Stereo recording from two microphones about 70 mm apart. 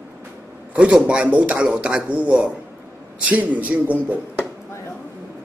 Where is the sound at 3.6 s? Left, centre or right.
Right.